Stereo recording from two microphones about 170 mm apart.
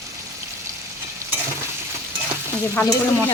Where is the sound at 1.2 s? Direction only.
15° right (ahead or behind).